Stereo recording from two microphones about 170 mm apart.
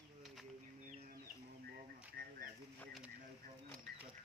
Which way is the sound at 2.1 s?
60° right (ahead or behind).